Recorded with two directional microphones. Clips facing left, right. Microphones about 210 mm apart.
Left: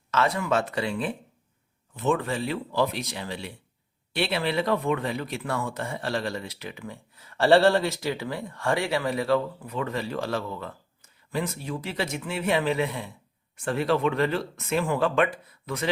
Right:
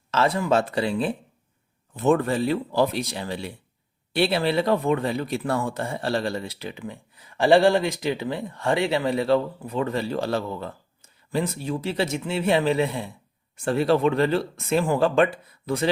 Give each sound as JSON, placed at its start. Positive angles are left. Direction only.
{"t": 0.1, "sound": "speech", "side_deg": -30}
{"t": 2.0, "sound": "a man's voice", "side_deg": -45}